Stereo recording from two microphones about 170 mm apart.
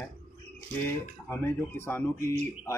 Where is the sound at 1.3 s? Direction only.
15° left (ahead or behind).